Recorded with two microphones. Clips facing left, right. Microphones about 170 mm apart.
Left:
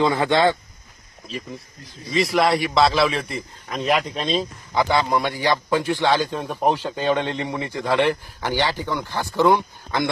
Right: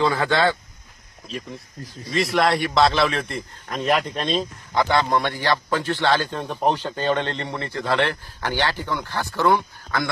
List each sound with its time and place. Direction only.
0.0 s speech: 20° left (ahead or behind)
2.0 s a man's voice: centre (ahead or behind)
5.4 s speech: 15° left (ahead or behind)